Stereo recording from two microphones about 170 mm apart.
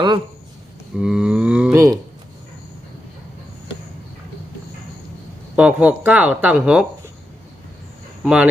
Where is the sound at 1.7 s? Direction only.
20° right (ahead or behind).